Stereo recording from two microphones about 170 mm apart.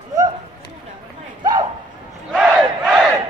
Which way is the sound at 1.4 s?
25° right (ahead or behind).